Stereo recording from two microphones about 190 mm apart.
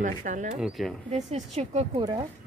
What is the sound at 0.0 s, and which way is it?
Speech, 40° right (ahead or behind).